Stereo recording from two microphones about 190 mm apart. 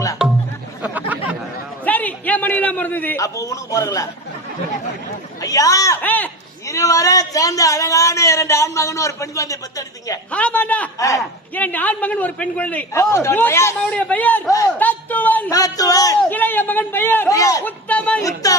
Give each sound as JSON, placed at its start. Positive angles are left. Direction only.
{"t": 0.8, "sound": "chatter", "side_deg": -10}
{"t": 1.8, "sound": "a man's voice", "side_deg": 10}
{"t": 5.4, "sound": "a man's voice", "side_deg": 20}